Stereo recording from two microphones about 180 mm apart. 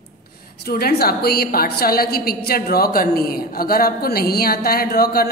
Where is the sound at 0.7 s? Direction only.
60° left (ahead or behind).